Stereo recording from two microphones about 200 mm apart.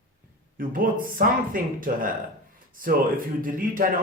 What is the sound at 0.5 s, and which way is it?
Speech, 45° right (ahead or behind).